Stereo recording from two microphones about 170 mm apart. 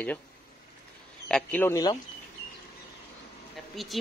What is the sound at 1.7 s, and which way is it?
Speech, 20° left (ahead or behind).